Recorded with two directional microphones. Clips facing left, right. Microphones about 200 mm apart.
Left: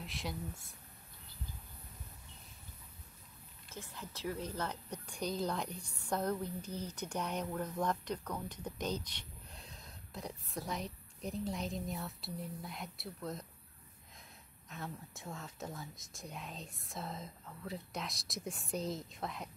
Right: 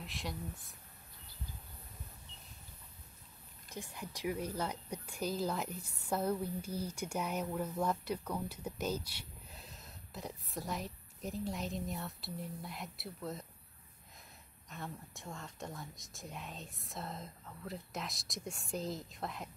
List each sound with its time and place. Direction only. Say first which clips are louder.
0.0 s speech: left 1 dB; centre (ahead or behind)
3.7 s a woman's voice: right 3 dB; 15° right (ahead or behind)
14.7 s speech: even; centre (ahead or behind)